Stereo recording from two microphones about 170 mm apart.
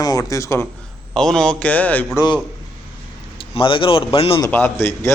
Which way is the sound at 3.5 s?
30° left (ahead or behind).